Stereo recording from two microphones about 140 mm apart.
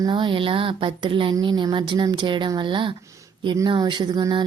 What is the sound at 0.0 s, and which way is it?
Speech, 35° right (ahead or behind).